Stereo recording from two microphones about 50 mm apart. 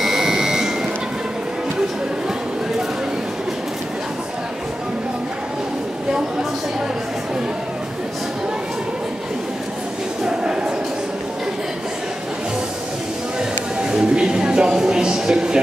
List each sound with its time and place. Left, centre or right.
0.0 s buzzer: centre
10.2 s a sound: centre
13.7 s music: centre